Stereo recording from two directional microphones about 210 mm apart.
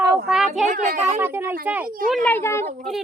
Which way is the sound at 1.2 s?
10° right (ahead or behind).